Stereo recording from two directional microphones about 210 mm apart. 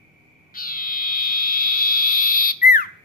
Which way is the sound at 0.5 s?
45° left (ahead or behind).